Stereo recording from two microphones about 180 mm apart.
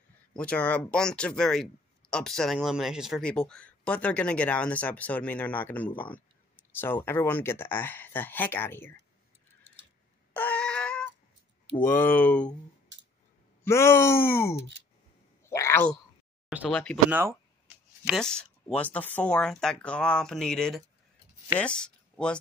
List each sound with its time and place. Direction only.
0.4 s speech: 5° left (ahead or behind)
10.3 s a sound: 5° left (ahead or behind)
11.8 s speech: 10° left (ahead or behind)
12.9 s scissors: 90° right
13.7 s speech: 15° left (ahead or behind)
16.4 s speech: centre (ahead or behind)
17.1 s speech: 10° right (ahead or behind)
18.0 s speech: centre (ahead or behind)